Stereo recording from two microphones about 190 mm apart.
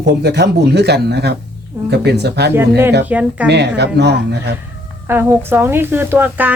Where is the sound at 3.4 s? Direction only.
60° right (ahead or behind).